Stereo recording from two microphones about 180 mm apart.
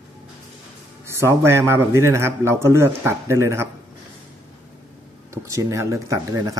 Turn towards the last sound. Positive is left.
turn(degrees=-20)  # may be behind; listen again after turning